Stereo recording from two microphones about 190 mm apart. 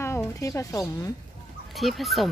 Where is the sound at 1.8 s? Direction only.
Centre (ahead or behind).